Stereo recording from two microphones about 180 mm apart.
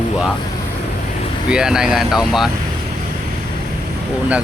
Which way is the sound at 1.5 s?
5° right (ahead or behind).